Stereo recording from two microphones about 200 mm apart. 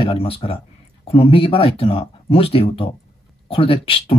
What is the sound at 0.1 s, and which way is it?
Speech, 30° left (ahead or behind).